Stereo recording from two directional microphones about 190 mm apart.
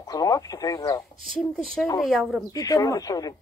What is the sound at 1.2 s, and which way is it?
A woman's voice, centre (ahead or behind).